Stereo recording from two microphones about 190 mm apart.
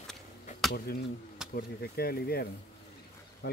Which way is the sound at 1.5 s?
55° left (ahead or behind).